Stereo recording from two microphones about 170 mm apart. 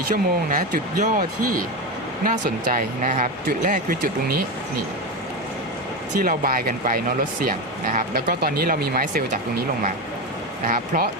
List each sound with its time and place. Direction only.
0.1 s speech: 50° right (ahead or behind)
2.2 s speech: 50° right (ahead or behind)
6.1 s speech: 55° right (ahead or behind)
10.7 s speech: 55° right (ahead or behind)